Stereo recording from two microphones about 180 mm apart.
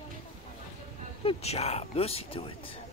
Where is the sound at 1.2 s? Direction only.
35° left (ahead or behind).